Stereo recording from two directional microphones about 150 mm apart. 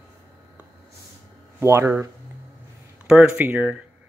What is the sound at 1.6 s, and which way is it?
Speech, 15° right (ahead or behind).